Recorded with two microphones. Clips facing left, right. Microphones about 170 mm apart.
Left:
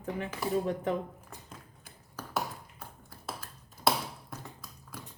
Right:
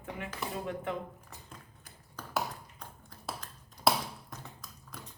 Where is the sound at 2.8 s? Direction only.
5° left (ahead or behind).